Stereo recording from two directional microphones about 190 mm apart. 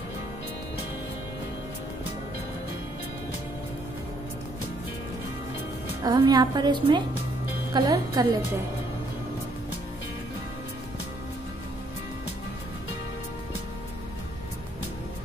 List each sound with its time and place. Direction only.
6.0 s a woman's voice: 20° right (ahead or behind)